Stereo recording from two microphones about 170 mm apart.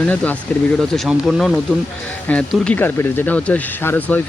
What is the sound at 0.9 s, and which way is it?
Speech, centre (ahead or behind).